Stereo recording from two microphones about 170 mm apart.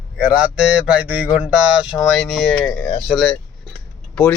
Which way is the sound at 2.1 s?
Centre (ahead or behind).